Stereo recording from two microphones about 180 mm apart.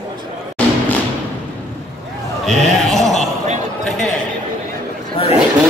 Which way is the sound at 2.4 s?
Centre (ahead or behind).